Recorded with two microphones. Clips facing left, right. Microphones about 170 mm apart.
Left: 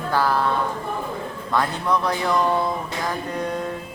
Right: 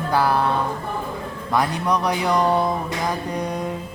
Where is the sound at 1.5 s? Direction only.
15° right (ahead or behind).